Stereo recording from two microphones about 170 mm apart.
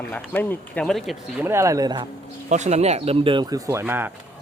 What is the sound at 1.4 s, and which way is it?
Speech, 15° right (ahead or behind).